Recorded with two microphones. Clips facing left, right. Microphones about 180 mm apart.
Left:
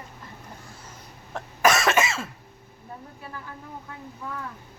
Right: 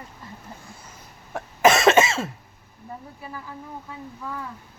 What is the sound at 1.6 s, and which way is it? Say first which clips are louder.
Cough: right 5 dB; 25° right (ahead or behind).